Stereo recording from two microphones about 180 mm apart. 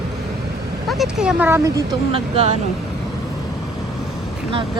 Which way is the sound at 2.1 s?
35° right (ahead or behind).